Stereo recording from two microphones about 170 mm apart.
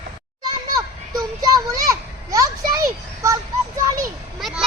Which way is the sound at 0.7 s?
20° right (ahead or behind).